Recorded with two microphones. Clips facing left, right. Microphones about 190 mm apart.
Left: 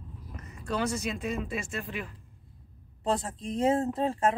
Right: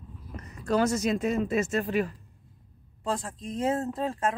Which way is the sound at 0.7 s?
45° right (ahead or behind).